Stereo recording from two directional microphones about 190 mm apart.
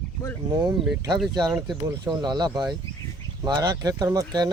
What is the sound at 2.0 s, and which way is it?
Speech, 20° right (ahead or behind).